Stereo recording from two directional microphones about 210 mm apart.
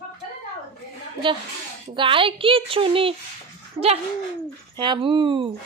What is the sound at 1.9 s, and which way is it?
Speech, 25° right (ahead or behind).